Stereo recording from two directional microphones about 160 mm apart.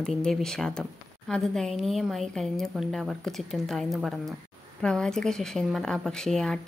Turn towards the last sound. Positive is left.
turn(degrees=5)  # may be behind; listen again after turning